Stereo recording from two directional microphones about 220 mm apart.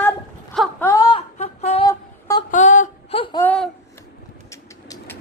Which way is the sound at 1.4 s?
30° left (ahead or behind).